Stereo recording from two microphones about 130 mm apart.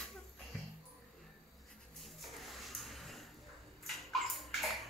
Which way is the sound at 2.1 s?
Centre (ahead or behind).